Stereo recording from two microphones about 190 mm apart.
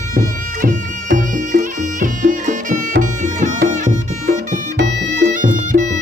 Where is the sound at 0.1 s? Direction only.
45° right (ahead or behind).